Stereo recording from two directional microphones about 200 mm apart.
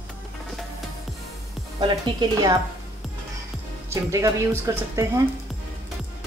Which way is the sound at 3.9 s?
15° right (ahead or behind).